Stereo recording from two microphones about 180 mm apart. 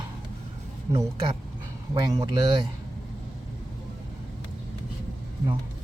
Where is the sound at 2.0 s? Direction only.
25° right (ahead or behind).